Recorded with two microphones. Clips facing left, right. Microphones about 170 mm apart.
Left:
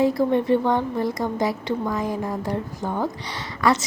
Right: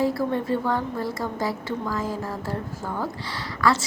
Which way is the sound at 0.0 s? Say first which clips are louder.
Left 4 dB; 20° left (ahead or behind).